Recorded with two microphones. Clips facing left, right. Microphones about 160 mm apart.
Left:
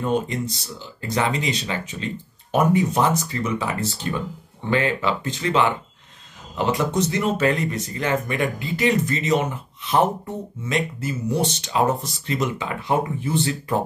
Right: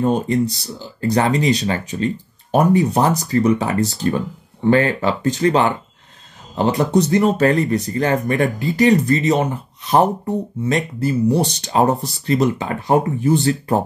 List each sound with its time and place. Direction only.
0.0 s speech: 35° right (ahead or behind)